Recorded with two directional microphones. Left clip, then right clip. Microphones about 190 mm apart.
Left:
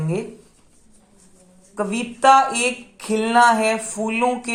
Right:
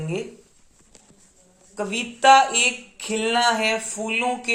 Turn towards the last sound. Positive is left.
turn(degrees=25)  # may be behind; listen again after turning